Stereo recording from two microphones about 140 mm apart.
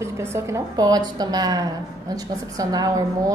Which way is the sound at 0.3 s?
25° right (ahead or behind).